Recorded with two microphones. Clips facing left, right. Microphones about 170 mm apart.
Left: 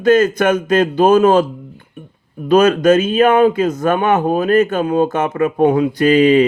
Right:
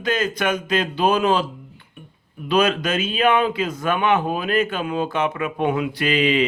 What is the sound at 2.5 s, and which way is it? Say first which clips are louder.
Speech: left 9 dB; 45° left (ahead or behind).